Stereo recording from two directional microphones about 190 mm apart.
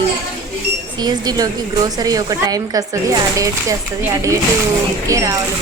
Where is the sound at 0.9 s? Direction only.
20° right (ahead or behind).